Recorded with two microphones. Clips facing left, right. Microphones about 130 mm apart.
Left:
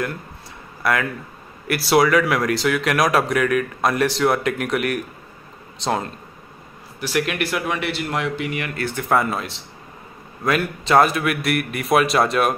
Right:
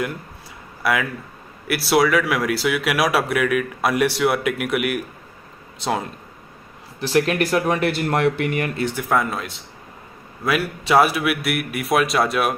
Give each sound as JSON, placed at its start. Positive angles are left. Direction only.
{"t": 0.8, "sound": "speech", "side_deg": -5}
{"t": 7.0, "sound": "speech", "side_deg": -30}
{"t": 9.1, "sound": "a man's voice", "side_deg": 0}